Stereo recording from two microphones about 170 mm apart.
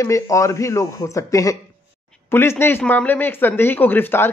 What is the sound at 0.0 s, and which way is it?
Speech, 20° left (ahead or behind).